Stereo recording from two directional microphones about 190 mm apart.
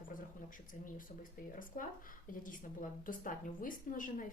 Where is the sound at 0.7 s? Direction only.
45° left (ahead or behind).